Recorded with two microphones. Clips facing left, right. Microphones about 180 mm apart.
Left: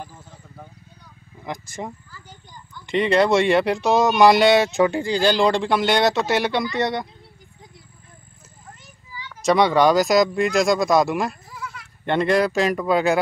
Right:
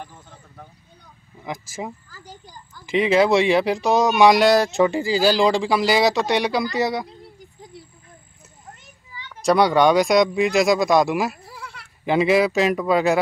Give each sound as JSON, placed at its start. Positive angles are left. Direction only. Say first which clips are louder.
{"t": 1.4, "sound": "speech", "louder": "right 1 dB", "side_deg": 0}
{"t": 2.0, "sound": "a sound", "louder": "right 3 dB", "side_deg": -40}
{"t": 2.9, "sound": "speech", "louder": "right 1 dB", "side_deg": 0}
{"t": 9.5, "sound": "speech", "louder": "even", "side_deg": 0}
{"t": 11.4, "sound": "goat", "louder": "left 3 dB", "side_deg": -35}
{"t": 12.0, "sound": "speech", "louder": "right 2 dB", "side_deg": -5}